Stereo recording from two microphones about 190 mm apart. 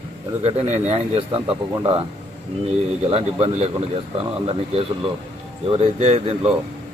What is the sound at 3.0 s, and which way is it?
Speech, 30° right (ahead or behind).